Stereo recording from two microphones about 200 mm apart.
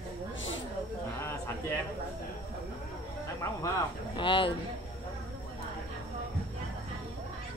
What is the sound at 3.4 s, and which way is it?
Speech, 15° left (ahead or behind).